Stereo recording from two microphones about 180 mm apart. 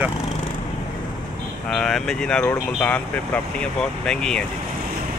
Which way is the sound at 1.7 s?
5° left (ahead or behind).